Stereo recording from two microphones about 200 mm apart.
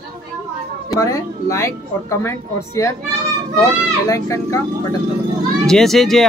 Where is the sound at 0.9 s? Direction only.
15° left (ahead or behind).